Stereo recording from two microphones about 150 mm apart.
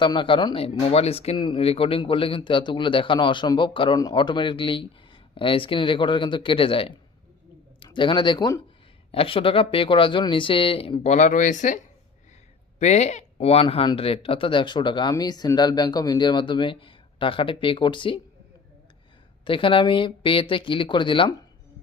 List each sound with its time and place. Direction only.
0.0 s speech: 35° left (ahead or behind)
9.1 s speech: 35° left (ahead or behind); by 11.8 s 55° left (ahead or behind)
12.8 s speech: 50° left (ahead or behind); by 18.2 s 35° left (ahead or behind)
19.5 s speech: 35° left (ahead or behind)